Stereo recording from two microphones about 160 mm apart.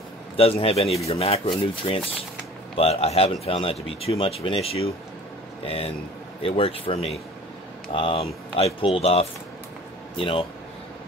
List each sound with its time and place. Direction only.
0.4 s speech: 35° left (ahead or behind)
6.4 s speech: 35° left (ahead or behind)